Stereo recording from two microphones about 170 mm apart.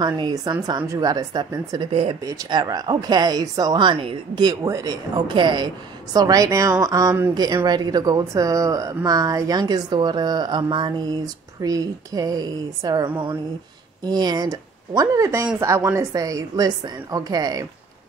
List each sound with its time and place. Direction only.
0.0 s a woman's voice: 25° right (ahead or behind)
1.9 s speech: 35° right (ahead or behind)
2.2 s a woman's voice: 20° right (ahead or behind)